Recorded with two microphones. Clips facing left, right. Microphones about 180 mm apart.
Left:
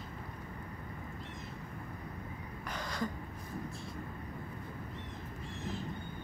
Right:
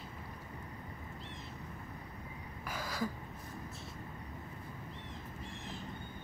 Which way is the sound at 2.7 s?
5° right (ahead or behind).